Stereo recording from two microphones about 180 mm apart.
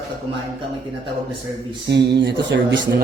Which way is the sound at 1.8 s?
70° right (ahead or behind).